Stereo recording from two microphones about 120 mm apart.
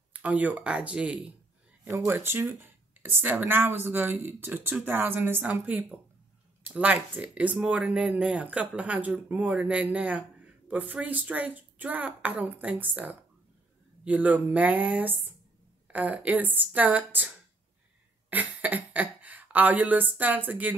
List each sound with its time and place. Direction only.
0.1 s speech: 10° right (ahead or behind)
18.3 s speech: 15° right (ahead or behind)